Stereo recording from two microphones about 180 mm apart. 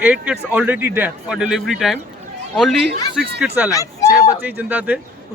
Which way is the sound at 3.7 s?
20° left (ahead or behind).